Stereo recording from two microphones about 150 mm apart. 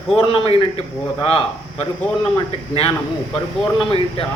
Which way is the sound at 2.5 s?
40° left (ahead or behind).